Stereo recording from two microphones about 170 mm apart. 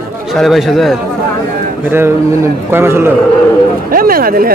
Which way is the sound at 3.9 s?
60° right (ahead or behind).